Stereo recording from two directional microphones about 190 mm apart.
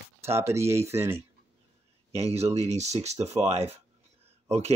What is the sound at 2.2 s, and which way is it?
Speech, 35° right (ahead or behind).